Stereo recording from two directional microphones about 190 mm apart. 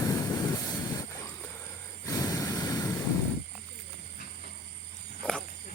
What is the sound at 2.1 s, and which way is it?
Vehicle, 20° left (ahead or behind).